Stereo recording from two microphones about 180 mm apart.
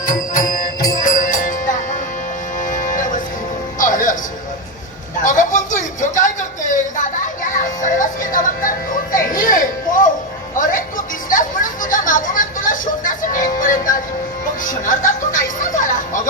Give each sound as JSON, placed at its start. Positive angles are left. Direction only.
{"t": 0.1, "sound": "music", "side_deg": 50}
{"t": 5.2, "sound": "a sound", "side_deg": 45}
{"t": 9.3, "sound": "music", "side_deg": 50}